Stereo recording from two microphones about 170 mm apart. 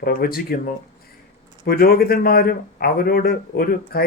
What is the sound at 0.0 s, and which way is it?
Speech, 60° left (ahead or behind).